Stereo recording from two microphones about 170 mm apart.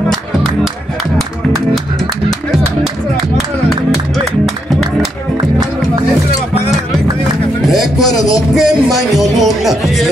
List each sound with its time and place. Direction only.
7.7 s music: centre (ahead or behind)